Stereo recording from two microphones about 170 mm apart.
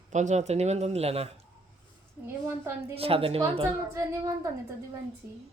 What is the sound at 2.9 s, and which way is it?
Speech, 35° right (ahead or behind).